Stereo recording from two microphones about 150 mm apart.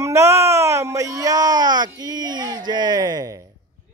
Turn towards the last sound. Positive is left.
turn(degrees=-25)  # may be behind; listen again after turning